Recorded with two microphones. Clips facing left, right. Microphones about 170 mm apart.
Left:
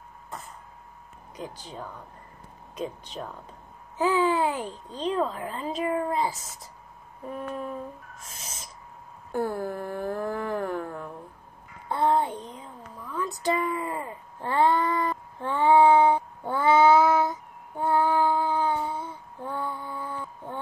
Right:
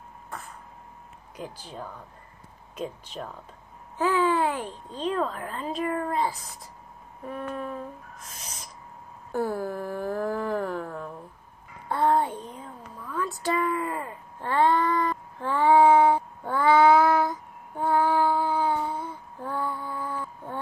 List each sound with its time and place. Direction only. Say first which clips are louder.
1.3 s a child's voice: even; 10° right (ahead or behind)
5.3 s a woman's voice: left 1 dB; 10° left (ahead or behind)
7.3 s a woman's voice: even; 15° left (ahead or behind)
9.3 s a sound: even; 5° right (ahead or behind)
11.9 s a sound: right 1 dB; 20° left (ahead or behind)
15.6 s child singing: even; 5° right (ahead or behind)